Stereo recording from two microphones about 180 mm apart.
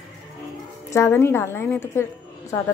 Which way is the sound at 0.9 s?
15° left (ahead or behind).